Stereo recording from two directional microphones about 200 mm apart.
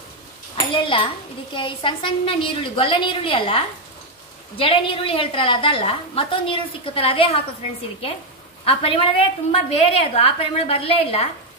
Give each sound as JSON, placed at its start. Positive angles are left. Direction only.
{"t": 0.6, "sound": "dishes", "side_deg": 25}
{"t": 1.5, "sound": "a woman's voice", "side_deg": 25}
{"t": 8.6, "sound": "a woman's voice", "side_deg": 25}